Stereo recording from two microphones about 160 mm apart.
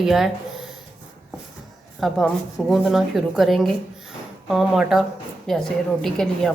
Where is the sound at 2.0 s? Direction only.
Centre (ahead or behind).